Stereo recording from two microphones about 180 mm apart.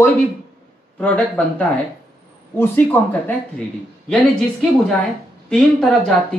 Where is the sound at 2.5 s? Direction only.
10° left (ahead or behind).